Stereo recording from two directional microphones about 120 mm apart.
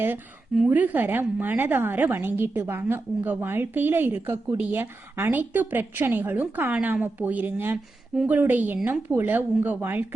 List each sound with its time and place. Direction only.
0.7 s a woman's voice: 15° right (ahead or behind)